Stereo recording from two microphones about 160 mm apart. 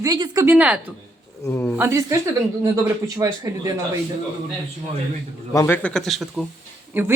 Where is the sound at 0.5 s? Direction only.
10° right (ahead or behind).